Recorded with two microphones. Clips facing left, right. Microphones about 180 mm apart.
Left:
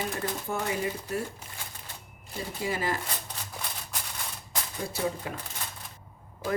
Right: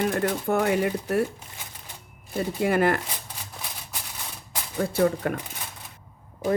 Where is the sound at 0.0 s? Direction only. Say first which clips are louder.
Right 8 dB; 65° right (ahead or behind).